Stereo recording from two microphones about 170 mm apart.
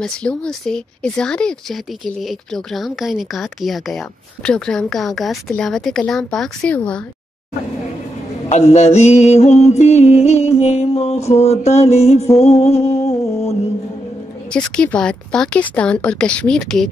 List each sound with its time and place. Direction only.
0.0 s speech: 5° left (ahead or behind)
8.5 s mantra: 40° left (ahead or behind)
14.5 s speech: 5° left (ahead or behind)